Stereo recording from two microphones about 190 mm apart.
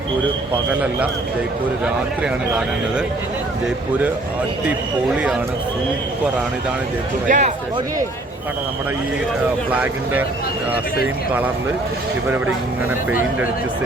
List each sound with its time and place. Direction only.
1.8 s a man's voice: 5° right (ahead or behind)
7.3 s speech: 40° right (ahead or behind)
9.7 s speech: 10° right (ahead or behind)